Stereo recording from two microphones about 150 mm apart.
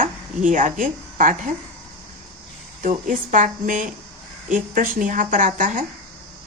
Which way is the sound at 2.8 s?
60° right (ahead or behind).